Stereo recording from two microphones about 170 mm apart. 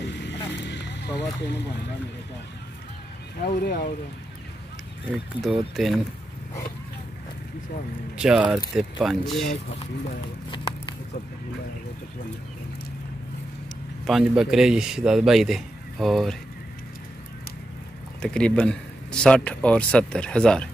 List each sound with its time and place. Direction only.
0.0 s vehicle: 90° left
3.3 s speech: 65° left (ahead or behind)
5.1 s speech: centre (ahead or behind)
8.2 s speech: 5° right (ahead or behind)
14.0 s speech: centre (ahead or behind)
18.2 s speech: 5° left (ahead or behind)